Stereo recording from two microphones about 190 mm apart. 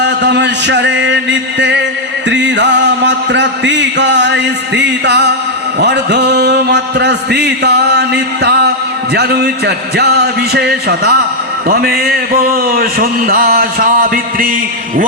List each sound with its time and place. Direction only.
0.0 s music: 65° right (ahead or behind)
5.8 s a man's voice: 65° right (ahead or behind); by 14.5 s 50° right (ahead or behind)